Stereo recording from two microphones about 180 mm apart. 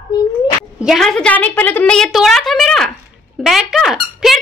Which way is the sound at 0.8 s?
Centre (ahead or behind).